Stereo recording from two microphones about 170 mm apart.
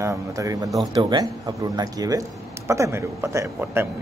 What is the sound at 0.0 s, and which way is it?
A man's voice, 20° right (ahead or behind).